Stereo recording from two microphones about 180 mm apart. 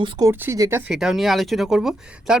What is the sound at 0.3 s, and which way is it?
Speech, 15° right (ahead or behind).